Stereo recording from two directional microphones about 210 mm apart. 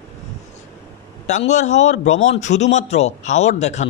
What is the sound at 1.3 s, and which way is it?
Speech, 35° left (ahead or behind).